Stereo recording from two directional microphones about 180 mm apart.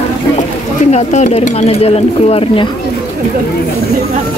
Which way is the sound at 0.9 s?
40° left (ahead or behind).